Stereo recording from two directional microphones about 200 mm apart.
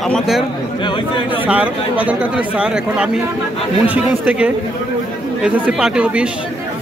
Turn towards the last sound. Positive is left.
turn(degrees=-5)  # may be behind; listen again after turning